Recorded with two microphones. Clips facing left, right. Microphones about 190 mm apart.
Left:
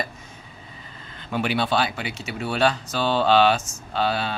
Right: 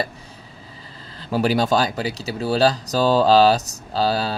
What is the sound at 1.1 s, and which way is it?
Speech, 35° right (ahead or behind).